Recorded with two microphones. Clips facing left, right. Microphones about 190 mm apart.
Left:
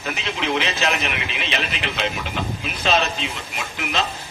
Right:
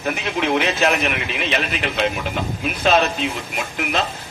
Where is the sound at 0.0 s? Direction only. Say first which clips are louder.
Right 4 dB; 50° right (ahead or behind).